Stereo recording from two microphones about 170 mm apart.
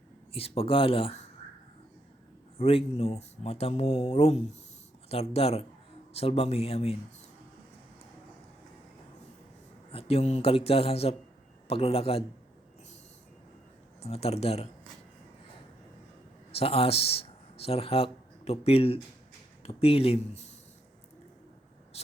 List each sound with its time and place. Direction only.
0.3 s speech: 35° left (ahead or behind)
2.6 s speech: 35° left (ahead or behind)
9.9 s speech: 35° left (ahead or behind)
14.0 s speech: 35° left (ahead or behind)
16.5 s speech: 35° left (ahead or behind)
21.9 s vehicle: 35° left (ahead or behind)